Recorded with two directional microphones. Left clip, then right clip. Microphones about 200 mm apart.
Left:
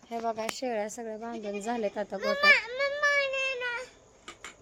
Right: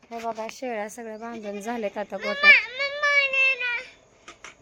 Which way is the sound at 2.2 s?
55° left (ahead or behind).